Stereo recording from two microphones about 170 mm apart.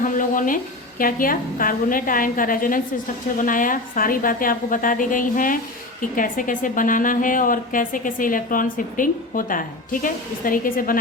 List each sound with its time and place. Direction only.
0.0 s speech: 50° left (ahead or behind)